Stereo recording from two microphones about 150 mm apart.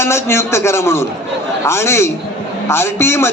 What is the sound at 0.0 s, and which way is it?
A man's voice, 15° left (ahead or behind).